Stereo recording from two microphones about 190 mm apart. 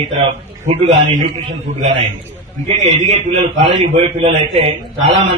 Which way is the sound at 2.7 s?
35° right (ahead or behind).